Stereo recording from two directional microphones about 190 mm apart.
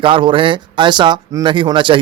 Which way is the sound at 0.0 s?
25° right (ahead or behind).